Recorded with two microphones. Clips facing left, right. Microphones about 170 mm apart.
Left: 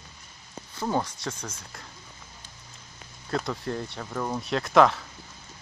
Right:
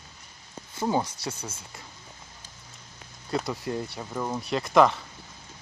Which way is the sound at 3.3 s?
5° right (ahead or behind).